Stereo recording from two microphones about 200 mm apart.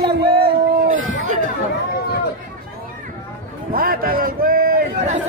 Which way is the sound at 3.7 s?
45° right (ahead or behind).